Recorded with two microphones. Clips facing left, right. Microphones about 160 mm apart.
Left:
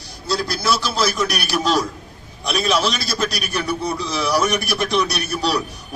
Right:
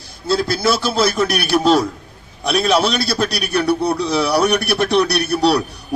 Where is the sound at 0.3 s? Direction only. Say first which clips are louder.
Right 4 dB; 55° right (ahead or behind).